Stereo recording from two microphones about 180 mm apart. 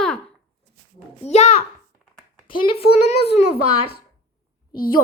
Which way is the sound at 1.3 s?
40° left (ahead or behind).